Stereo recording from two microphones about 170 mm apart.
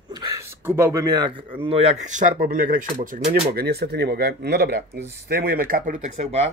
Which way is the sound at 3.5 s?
70° right (ahead or behind).